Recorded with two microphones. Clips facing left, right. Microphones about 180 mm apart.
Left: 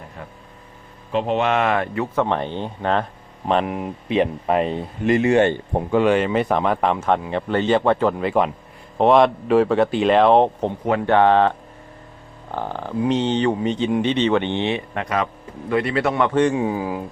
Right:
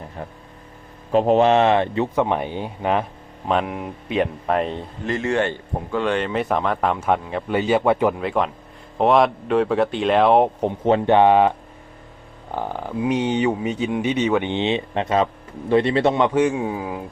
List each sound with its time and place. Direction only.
0.2 s speech: 35° right (ahead or behind)
2.2 s speech: 10° right (ahead or behind); by 4.8 s 5° left (ahead or behind)
5.0 s speech: 15° left (ahead or behind); by 8.1 s 10° right (ahead or behind)
8.1 s speech: centre (ahead or behind)
10.8 s a man's voice: 20° right (ahead or behind)
16.3 s speech: 5° right (ahead or behind)